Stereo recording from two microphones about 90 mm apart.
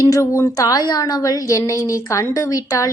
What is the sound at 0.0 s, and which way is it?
A woman's voice, 40° left (ahead or behind).